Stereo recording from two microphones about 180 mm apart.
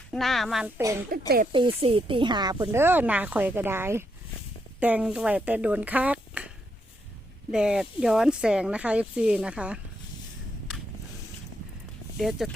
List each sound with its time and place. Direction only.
0.1 s speech: centre (ahead or behind)
1.1 s speech: 55° right (ahead or behind)
1.5 s speech: 30° right (ahead or behind); by 6.5 s 5° right (ahead or behind)
7.5 s speech: 5° right (ahead or behind)
12.2 s speech: centre (ahead or behind)